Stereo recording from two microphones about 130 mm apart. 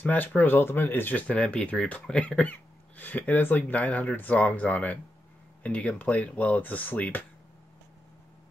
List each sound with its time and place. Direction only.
0.0 s speech: 15° left (ahead or behind)